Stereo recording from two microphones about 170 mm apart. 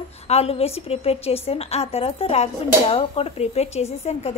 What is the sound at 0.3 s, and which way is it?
A woman's voice, 35° left (ahead or behind).